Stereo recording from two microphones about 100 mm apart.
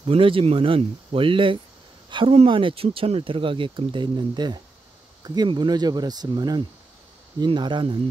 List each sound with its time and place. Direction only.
0.0 s speech: 65° right (ahead or behind)
2.0 s a sound: 55° right (ahead or behind)
2.3 s speech: 60° right (ahead or behind)